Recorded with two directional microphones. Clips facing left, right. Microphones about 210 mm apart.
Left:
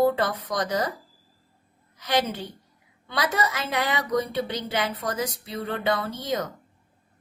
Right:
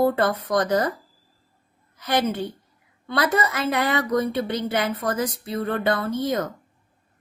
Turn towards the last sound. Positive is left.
turn(degrees=-55)  # may be behind; listen again after turning